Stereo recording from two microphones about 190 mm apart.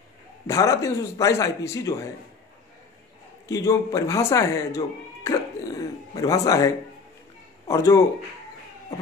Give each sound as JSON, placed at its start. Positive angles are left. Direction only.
{"t": 0.5, "sound": "speech", "side_deg": 15}
{"t": 3.4, "sound": "speech", "side_deg": 15}